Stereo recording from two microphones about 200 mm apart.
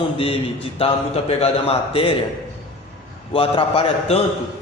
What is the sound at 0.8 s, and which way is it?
Speech, 30° left (ahead or behind).